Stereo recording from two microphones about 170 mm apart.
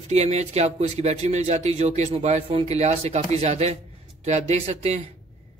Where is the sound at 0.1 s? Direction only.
40° right (ahead or behind).